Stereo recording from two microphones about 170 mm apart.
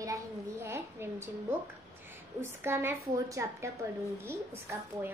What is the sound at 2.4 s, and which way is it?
A child's voice, 15° right (ahead or behind).